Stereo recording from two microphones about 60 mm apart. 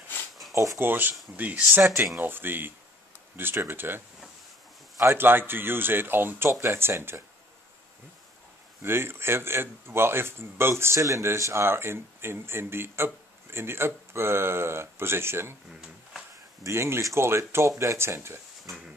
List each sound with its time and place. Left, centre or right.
0.7 s speech: right
5.0 s speech: right
8.8 s speech: right
11.3 s speech: right
11.6 s speech: right
16.6 s speech: right